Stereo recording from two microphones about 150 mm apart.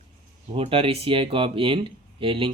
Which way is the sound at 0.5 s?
40° right (ahead or behind).